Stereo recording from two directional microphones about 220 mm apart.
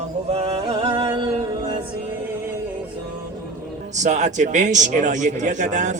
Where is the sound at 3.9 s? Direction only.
30° right (ahead or behind).